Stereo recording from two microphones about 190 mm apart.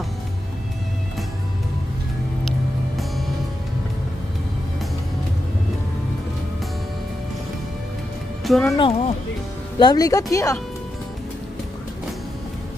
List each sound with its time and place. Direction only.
8.5 s speech: centre (ahead or behind)
8.7 s speech: 30° left (ahead or behind)